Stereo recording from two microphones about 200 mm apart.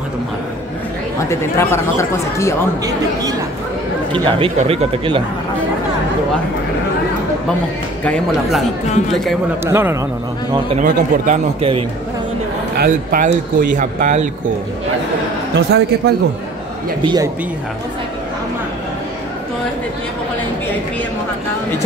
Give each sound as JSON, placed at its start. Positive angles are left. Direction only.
{"t": 1.3, "sound": "speech", "side_deg": 15}
{"t": 4.1, "sound": "speech", "side_deg": -30}
{"t": 8.0, "sound": "speech", "side_deg": 0}
{"t": 9.7, "sound": "a man's voice", "side_deg": -10}
{"t": 10.8, "sound": "speech", "side_deg": -40}
{"t": 12.7, "sound": "speech", "side_deg": -45}
{"t": 15.5, "sound": "a man's voice", "side_deg": -55}
{"t": 17.0, "sound": "speech", "side_deg": -20}